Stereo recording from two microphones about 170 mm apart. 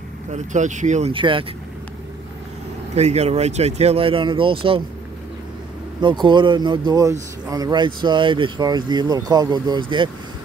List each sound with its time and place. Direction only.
0.3 s speech: 45° right (ahead or behind)
1.1 s a man's voice: 30° right (ahead or behind)
2.9 s speech: 40° right (ahead or behind)
5.9 s a man's voice: 25° right (ahead or behind)